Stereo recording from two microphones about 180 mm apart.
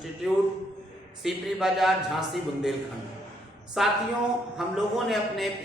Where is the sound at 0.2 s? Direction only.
Centre (ahead or behind).